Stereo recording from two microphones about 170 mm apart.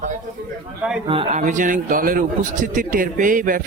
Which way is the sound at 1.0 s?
30° right (ahead or behind).